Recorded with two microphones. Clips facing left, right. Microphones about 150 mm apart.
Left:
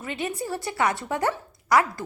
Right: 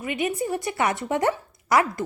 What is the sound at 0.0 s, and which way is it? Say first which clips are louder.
A woman's voice: right 4 dB; 15° right (ahead or behind).